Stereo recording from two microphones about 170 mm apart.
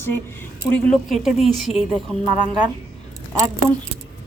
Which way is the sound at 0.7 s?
Centre (ahead or behind).